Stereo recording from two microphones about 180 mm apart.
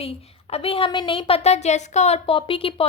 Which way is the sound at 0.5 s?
30° left (ahead or behind).